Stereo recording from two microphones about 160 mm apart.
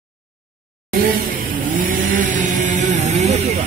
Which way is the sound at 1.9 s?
55° right (ahead or behind).